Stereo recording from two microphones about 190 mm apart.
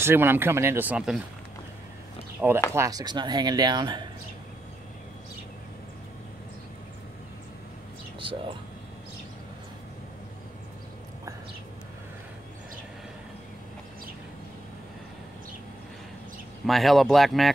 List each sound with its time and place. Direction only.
0.0 s speech: 10° right (ahead or behind)
2.7 s speech: 15° right (ahead or behind)
8.2 s speech: 25° right (ahead or behind)
16.6 s speech: centre (ahead or behind)